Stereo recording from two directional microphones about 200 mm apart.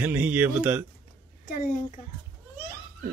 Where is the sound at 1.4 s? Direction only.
45° left (ahead or behind).